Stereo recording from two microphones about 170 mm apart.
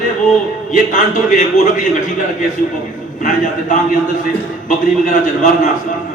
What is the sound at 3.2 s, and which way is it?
A man's voice, 45° left (ahead or behind).